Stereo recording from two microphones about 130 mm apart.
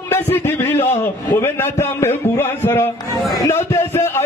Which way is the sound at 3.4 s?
20° left (ahead or behind).